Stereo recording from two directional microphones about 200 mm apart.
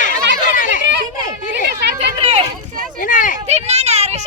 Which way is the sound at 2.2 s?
35° right (ahead or behind).